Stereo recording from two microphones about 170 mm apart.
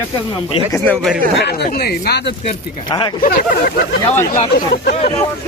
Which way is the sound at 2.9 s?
25° left (ahead or behind).